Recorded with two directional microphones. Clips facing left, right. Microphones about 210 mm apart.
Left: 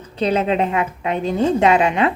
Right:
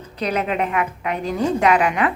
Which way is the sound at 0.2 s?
25° left (ahead or behind).